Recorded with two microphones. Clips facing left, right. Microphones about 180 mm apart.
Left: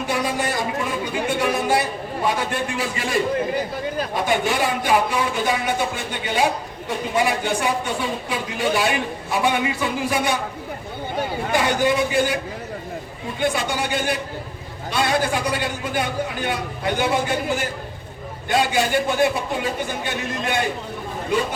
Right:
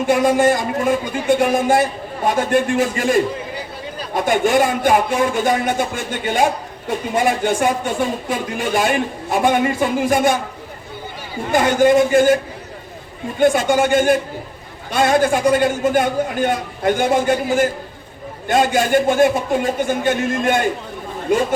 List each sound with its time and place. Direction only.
0.1 s a woman's voice: 50° right (ahead or behind)
11.5 s a woman's voice: 45° right (ahead or behind)
13.4 s a woman's voice: 50° right (ahead or behind)